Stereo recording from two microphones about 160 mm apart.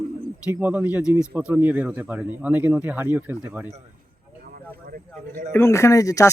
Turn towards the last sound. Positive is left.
turn(degrees=20)  # may be behind; listen again after turning